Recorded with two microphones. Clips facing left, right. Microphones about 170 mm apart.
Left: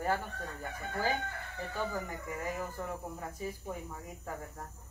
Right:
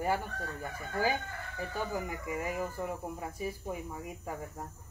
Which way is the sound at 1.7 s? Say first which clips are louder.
Right 1 dB; 10° right (ahead or behind).